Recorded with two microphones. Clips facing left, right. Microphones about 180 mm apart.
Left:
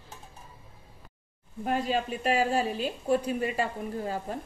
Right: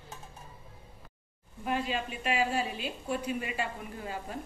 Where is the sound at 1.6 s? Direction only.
40° left (ahead or behind).